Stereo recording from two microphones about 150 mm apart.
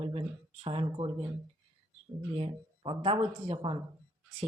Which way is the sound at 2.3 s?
35° right (ahead or behind).